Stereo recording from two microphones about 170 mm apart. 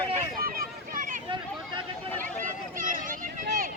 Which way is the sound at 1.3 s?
30° right (ahead or behind).